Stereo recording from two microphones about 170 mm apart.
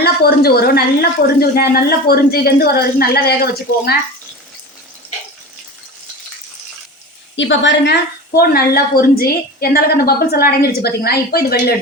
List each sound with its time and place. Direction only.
0.0 s a woman's voice: 65° left (ahead or behind)
7.3 s a woman's voice: 90° left; by 11.7 s 65° left (ahead or behind)